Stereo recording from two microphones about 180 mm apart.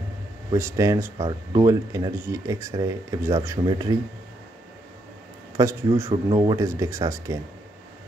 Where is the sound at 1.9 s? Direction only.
20° right (ahead or behind).